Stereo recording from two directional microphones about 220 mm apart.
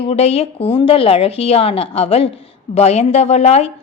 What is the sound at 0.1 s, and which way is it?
A woman's voice, 30° left (ahead or behind).